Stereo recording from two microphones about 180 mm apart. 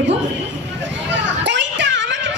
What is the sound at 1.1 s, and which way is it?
Children playing, 80° right.